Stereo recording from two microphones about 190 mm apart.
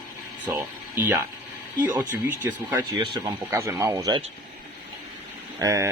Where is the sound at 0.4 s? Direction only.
10° right (ahead or behind).